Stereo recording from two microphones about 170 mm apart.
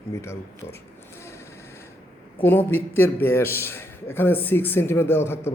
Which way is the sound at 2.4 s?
10° left (ahead or behind).